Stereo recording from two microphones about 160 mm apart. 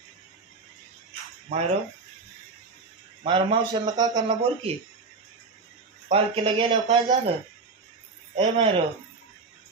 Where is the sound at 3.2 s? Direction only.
30° right (ahead or behind).